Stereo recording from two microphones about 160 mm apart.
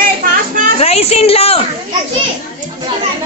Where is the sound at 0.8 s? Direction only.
40° left (ahead or behind).